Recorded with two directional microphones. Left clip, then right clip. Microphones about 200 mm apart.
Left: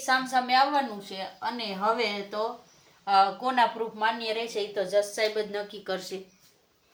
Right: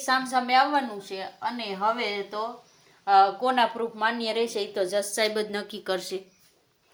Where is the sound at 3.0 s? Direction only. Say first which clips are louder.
Right 3 dB; 35° right (ahead or behind).